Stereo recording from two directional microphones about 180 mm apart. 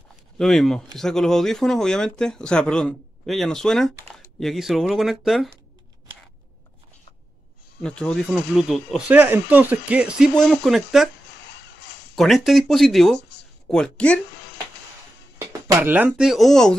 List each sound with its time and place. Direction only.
0.4 s speech: centre (ahead or behind)
7.8 s speech: 5° left (ahead or behind)
11.4 s music: 75° left (ahead or behind)
12.2 s speech: centre (ahead or behind)
15.8 s speech: 10° right (ahead or behind)